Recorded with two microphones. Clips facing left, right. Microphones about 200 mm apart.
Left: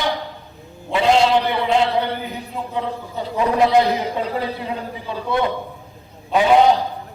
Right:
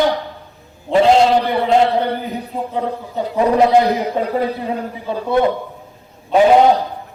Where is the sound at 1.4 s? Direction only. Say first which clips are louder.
Right 4 dB; 40° right (ahead or behind).